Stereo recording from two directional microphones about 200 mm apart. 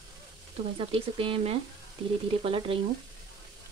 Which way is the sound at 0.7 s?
25° right (ahead or behind).